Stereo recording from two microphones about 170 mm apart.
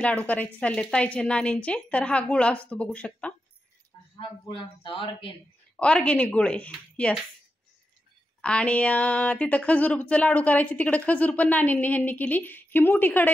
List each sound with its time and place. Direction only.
0.0 s speech: 10° left (ahead or behind)
4.2 s a man's voice: 30° left (ahead or behind)
5.8 s speech: 5° left (ahead or behind)
8.4 s speech: 5° left (ahead or behind)